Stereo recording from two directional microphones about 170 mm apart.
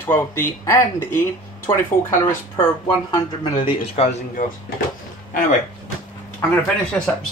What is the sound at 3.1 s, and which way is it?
Speech, 30° left (ahead or behind).